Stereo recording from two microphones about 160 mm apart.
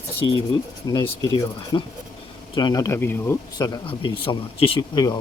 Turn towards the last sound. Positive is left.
turn(degrees=30)  # may be behind; listen again after turning